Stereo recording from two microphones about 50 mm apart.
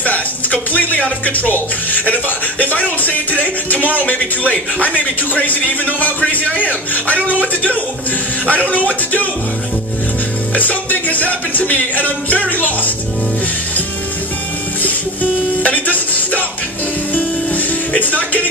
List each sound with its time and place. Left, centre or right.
0.0 s speech: left
10.5 s speech: left
15.6 s speech: left
17.1 s music: left